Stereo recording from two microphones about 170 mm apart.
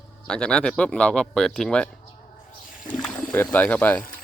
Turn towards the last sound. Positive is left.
turn(degrees=10)  # may be behind; listen again after turning